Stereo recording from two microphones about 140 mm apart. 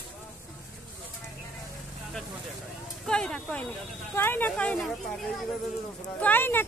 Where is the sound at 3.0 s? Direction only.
5° left (ahead or behind).